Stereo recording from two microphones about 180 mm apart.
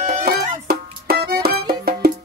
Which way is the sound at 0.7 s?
60° right (ahead or behind).